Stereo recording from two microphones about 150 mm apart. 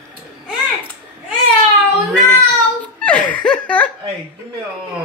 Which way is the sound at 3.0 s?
10° left (ahead or behind).